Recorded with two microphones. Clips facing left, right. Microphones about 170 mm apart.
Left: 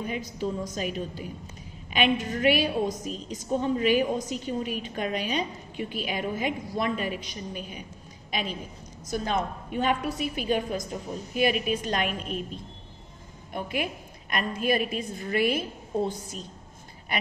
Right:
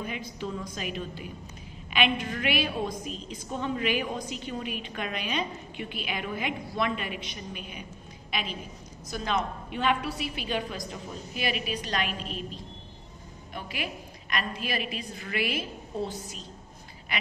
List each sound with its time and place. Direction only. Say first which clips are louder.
0.0 s a woman's voice: left 4 dB; 40° left (ahead or behind)
13.5 s a woman's voice: left 6 dB; 50° left (ahead or behind)